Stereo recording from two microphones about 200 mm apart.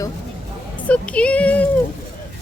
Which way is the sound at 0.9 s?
5° left (ahead or behind).